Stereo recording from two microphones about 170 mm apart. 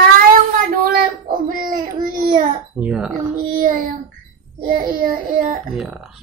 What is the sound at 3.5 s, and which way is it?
A child's voice, 55° right (ahead or behind).